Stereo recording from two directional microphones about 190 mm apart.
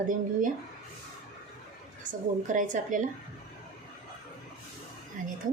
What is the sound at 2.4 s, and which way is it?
Speech, 45° right (ahead or behind).